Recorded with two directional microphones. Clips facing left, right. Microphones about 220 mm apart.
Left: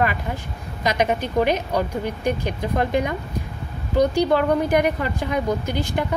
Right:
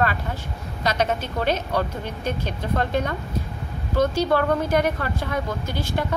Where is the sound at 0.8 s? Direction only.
15° left (ahead or behind).